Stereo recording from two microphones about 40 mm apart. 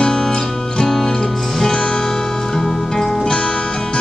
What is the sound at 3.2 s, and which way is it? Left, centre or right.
Music, left.